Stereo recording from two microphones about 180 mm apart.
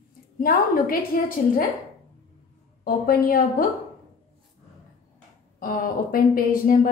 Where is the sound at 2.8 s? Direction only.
50° left (ahead or behind).